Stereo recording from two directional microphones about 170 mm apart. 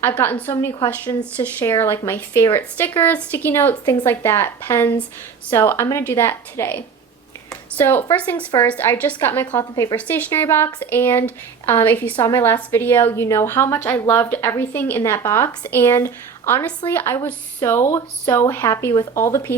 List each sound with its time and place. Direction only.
0.0 s a woman's voice: 10° left (ahead or behind)
7.5 s a sound: 10° left (ahead or behind)
8.1 s a woman's voice: 10° left (ahead or behind)